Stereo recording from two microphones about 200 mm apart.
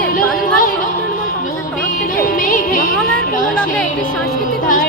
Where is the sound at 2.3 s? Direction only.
45° left (ahead or behind).